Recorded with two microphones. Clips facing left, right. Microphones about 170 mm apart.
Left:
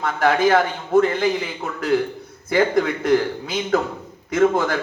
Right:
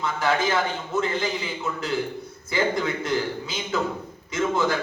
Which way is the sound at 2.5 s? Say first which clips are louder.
Left 6 dB; 60° left (ahead or behind).